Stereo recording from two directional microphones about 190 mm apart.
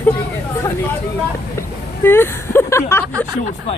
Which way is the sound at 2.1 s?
10° left (ahead or behind).